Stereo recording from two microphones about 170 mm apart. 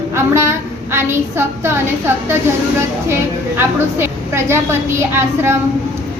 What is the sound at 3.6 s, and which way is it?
A woman's voice, 15° right (ahead or behind).